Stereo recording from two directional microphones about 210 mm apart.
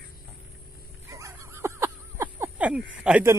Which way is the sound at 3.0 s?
5° right (ahead or behind).